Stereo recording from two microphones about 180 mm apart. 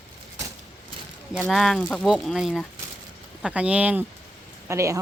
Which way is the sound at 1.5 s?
Centre (ahead or behind).